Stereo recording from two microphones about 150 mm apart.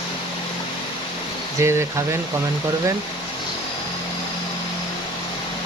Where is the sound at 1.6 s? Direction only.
15° right (ahead or behind).